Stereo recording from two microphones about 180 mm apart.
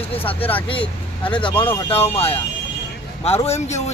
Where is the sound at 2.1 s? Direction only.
35° left (ahead or behind).